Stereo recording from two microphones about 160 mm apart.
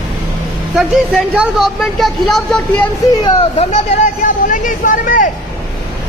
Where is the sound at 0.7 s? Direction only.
5° right (ahead or behind).